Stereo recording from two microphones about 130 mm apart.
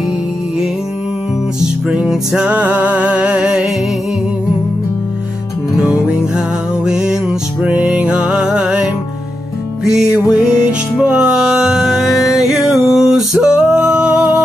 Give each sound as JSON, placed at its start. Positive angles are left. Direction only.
{"t": 1.9, "sound": "music", "side_deg": -5}
{"t": 5.8, "sound": "music", "side_deg": -5}